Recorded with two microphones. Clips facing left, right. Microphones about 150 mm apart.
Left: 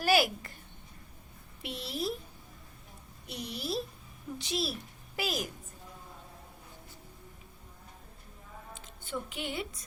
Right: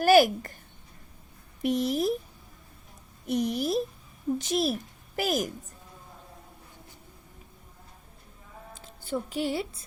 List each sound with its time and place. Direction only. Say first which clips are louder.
0.0 s a woman's voice: right 8 dB; 45° right (ahead or behind)
1.6 s a woman's voice: right 10 dB; 45° right (ahead or behind)
3.2 s a woman's voice: right 11 dB; 45° right (ahead or behind)
8.8 s a woman's voice: right 7 dB; 35° right (ahead or behind)